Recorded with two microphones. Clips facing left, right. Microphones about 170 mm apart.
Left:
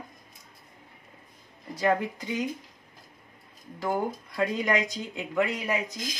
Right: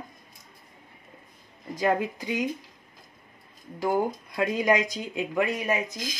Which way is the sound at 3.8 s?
15° right (ahead or behind).